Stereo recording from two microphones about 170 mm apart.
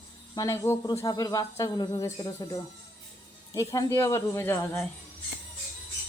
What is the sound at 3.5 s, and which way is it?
Speech, 20° left (ahead or behind).